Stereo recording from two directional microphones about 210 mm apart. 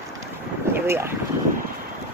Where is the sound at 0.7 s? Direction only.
10° right (ahead or behind).